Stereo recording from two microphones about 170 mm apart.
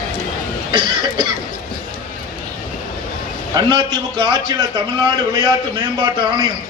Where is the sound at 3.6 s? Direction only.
25° right (ahead or behind).